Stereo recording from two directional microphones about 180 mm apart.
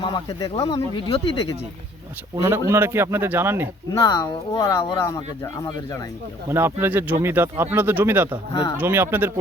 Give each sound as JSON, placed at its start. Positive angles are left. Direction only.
{"t": 0.0, "sound": "speech", "side_deg": 25}
{"t": 2.3, "sound": "speech", "side_deg": -15}
{"t": 3.9, "sound": "speech", "side_deg": 20}
{"t": 6.5, "sound": "speech", "side_deg": -15}